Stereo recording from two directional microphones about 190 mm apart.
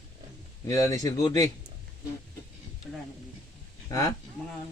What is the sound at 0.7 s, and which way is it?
Speech, 20° left (ahead or behind).